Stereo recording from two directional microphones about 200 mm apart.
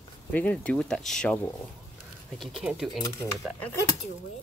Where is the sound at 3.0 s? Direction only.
15° left (ahead or behind).